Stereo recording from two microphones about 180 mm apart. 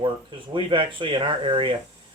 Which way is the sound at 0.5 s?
25° right (ahead or behind).